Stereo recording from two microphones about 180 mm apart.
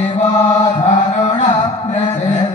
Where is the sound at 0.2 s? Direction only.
40° left (ahead or behind).